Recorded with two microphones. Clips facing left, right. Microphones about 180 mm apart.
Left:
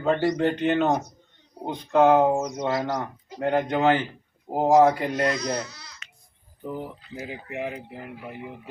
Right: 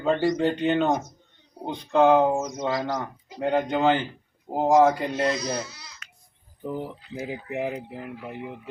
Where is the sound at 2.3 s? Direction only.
15° left (ahead or behind).